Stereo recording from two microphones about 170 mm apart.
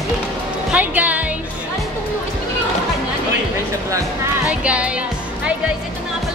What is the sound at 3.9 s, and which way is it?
Music, 10° right (ahead or behind).